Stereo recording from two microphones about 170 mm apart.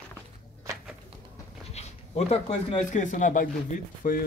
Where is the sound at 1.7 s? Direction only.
40° left (ahead or behind).